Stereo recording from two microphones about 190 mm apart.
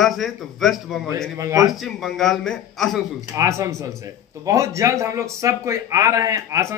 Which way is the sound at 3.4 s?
15° right (ahead or behind).